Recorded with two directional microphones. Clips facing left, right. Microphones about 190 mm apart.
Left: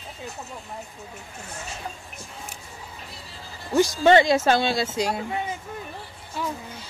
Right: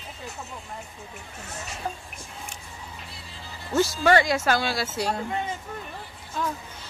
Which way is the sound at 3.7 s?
15° left (ahead or behind).